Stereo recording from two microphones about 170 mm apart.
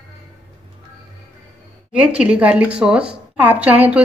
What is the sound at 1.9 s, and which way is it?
A woman's voice, 5° right (ahead or behind).